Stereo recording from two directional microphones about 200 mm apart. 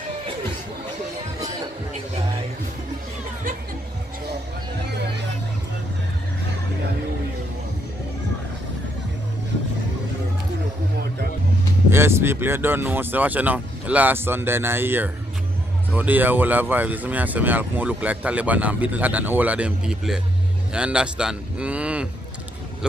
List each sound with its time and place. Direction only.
11.9 s a man's voice: 10° right (ahead or behind)